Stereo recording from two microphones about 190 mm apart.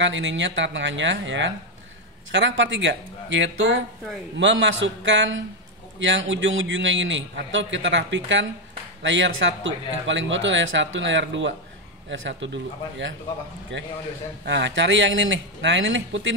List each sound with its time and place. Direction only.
0.0 s a man's voice: 75° right (ahead or behind)